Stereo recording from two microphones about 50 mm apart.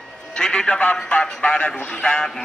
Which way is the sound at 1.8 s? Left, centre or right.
Centre.